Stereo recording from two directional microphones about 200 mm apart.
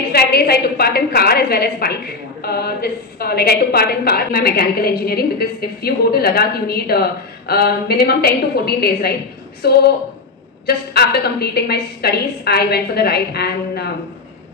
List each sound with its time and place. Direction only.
0.1 s a woman's voice: 50° left (ahead or behind)